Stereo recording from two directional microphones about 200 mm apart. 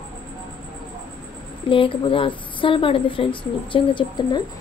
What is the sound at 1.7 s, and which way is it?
A woman's voice, 25° left (ahead or behind).